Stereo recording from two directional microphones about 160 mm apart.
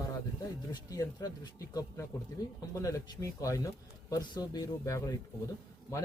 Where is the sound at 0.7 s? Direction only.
20° left (ahead or behind).